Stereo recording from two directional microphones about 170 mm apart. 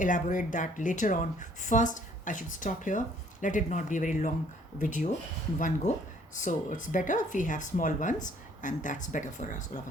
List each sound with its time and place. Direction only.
0.0 s speech: 50° left (ahead or behind)